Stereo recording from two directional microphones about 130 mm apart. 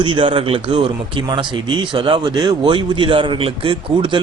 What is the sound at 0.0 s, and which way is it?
A man's voice, 40° right (ahead or behind).